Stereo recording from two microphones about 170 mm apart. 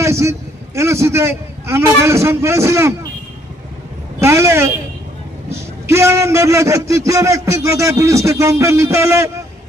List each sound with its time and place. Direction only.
0.0 s a man's voice: 15° right (ahead or behind)
4.2 s a man's voice: 15° right (ahead or behind)